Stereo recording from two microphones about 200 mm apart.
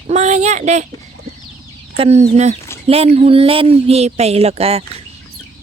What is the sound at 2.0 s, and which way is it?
Speech, 30° right (ahead or behind).